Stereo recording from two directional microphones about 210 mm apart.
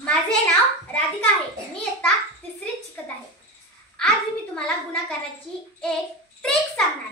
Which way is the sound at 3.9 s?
5° left (ahead or behind).